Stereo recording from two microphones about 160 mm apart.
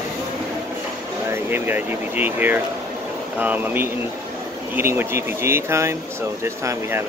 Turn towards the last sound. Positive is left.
turn(degrees=-15)  # may be behind; listen again after turning